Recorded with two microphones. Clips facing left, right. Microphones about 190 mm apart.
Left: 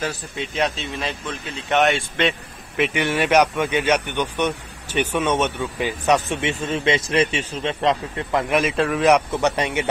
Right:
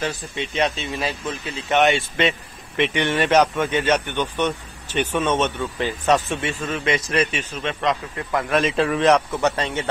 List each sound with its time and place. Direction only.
0.0 s a man's voice: centre (ahead or behind); by 8.5 s 20° left (ahead or behind)
8.5 s a man's voice: centre (ahead or behind)
9.3 s speech: 15° left (ahead or behind)